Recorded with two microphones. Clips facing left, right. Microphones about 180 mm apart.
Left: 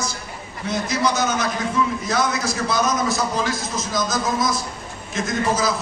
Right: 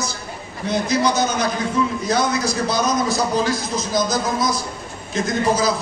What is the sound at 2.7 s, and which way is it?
A man's voice, 35° right (ahead or behind).